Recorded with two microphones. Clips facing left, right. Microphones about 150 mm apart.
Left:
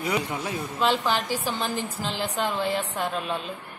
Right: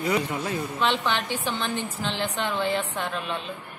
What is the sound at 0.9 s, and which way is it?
Speech, 35° left (ahead or behind).